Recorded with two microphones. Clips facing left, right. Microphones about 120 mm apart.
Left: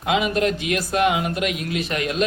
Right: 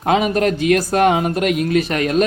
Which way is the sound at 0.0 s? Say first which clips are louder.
Right 4 dB; 45° right (ahead or behind).